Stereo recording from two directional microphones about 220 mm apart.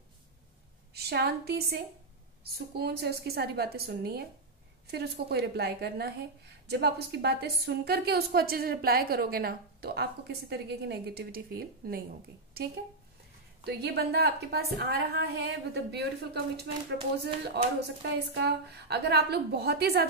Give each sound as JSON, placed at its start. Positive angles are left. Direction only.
{"t": 0.9, "sound": "a woman's voice", "side_deg": -45}
{"t": 17.7, "sound": "a woman's voice", "side_deg": -50}